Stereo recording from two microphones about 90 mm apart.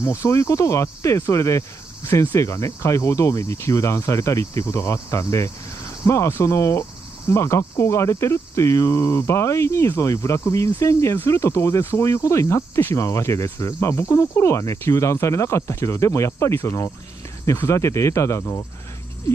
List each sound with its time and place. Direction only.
0.0 s speech: 35° left (ahead or behind)